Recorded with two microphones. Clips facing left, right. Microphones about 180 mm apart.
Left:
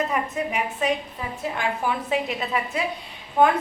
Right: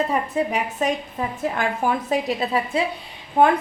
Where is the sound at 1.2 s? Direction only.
50° right (ahead or behind).